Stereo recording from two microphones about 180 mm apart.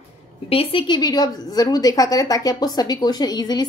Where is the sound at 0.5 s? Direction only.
30° left (ahead or behind).